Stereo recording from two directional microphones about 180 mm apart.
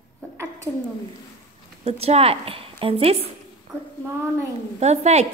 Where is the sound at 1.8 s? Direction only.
35° right (ahead or behind).